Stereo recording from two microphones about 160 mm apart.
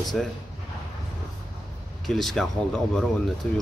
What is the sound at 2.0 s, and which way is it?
Speech, centre (ahead or behind).